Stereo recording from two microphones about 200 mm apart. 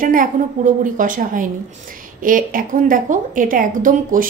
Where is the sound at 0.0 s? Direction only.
45° right (ahead or behind).